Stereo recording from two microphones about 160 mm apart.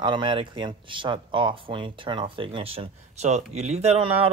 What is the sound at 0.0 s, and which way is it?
Speech, 30° right (ahead or behind).